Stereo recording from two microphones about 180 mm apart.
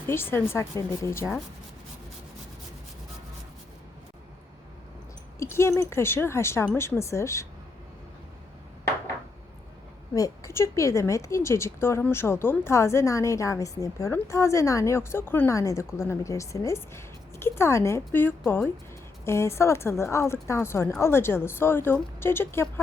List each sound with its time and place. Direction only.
0.1 s a woman's voice: 15° left (ahead or behind)
5.4 s a woman's voice: 15° left (ahead or behind)
10.2 s a woman's voice: 15° left (ahead or behind)